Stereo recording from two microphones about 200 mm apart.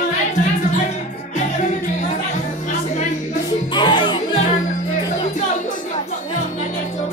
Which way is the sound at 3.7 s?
20° left (ahead or behind).